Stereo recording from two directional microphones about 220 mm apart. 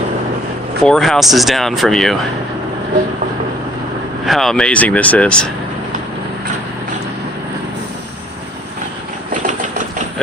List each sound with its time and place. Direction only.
0.9 s speech: centre (ahead or behind)
4.3 s speech: centre (ahead or behind)
9.3 s sewing machine: 35° right (ahead or behind)